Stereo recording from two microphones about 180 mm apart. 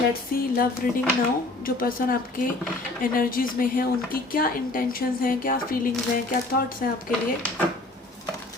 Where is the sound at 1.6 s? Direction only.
50° left (ahead or behind).